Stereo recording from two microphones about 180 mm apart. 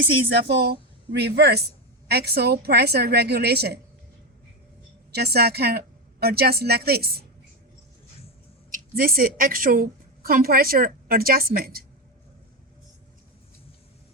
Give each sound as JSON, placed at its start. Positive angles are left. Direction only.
{"t": 0.0, "sound": "a woman's voice", "side_deg": -80}
{"t": 5.1, "sound": "a woman's voice", "side_deg": -60}
{"t": 8.7, "sound": "a woman's voice", "side_deg": -55}